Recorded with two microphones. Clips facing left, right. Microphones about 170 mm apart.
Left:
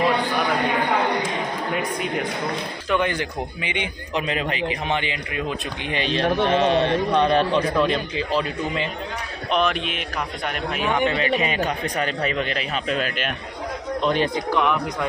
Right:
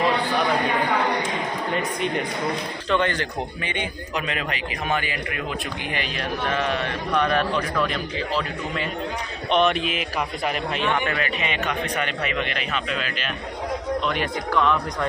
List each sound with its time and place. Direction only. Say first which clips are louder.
1.7 s a man's voice: right 1 dB; 5° left (ahead or behind)
4.1 s a man's voice: left 4 dB; 30° left (ahead or behind)
9.5 s a man's voice: right 2 dB; centre (ahead or behind); by 11.3 s 20° left (ahead or behind)
11.3 s a man's voice: left 4 dB; 35° left (ahead or behind)
14.0 s a man's voice: left 4 dB; 30° left (ahead or behind)
14.5 s speech: right 2 dB; 15° left (ahead or behind)